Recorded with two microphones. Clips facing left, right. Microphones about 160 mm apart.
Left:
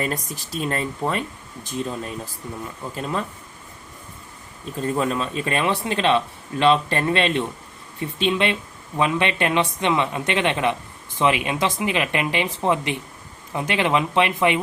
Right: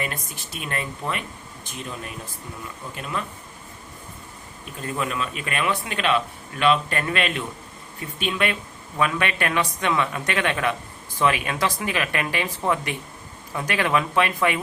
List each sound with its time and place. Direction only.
0.0 s speech: 35° left (ahead or behind)
2.9 s speech: 35° left (ahead or behind)
4.8 s a man's voice: 35° left (ahead or behind)